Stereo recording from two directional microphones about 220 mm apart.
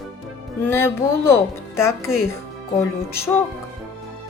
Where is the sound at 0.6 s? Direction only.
10° left (ahead or behind).